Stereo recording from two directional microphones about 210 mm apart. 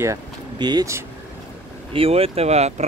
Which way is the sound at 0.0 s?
15° right (ahead or behind).